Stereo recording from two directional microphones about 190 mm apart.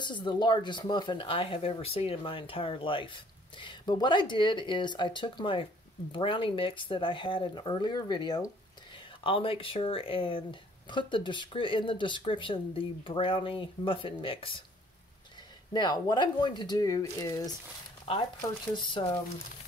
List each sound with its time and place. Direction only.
0.0 s speech: 25° left (ahead or behind)
15.7 s speech: 20° left (ahead or behind)